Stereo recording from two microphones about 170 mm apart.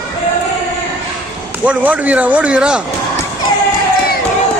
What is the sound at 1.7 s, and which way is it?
Speech, 10° right (ahead or behind).